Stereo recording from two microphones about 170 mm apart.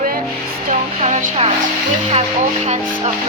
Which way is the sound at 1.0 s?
40° right (ahead or behind).